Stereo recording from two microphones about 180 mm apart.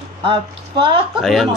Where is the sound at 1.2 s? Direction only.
Centre (ahead or behind).